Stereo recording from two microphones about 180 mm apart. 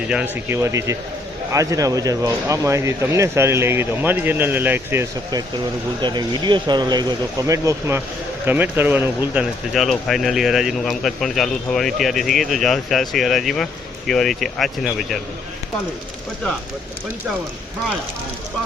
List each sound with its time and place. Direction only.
0.1 s speech: 10° right (ahead or behind)
6.0 s speech: 25° right (ahead or behind); by 15.2 s centre (ahead or behind)